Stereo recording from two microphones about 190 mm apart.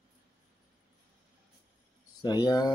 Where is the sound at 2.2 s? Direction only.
20° left (ahead or behind).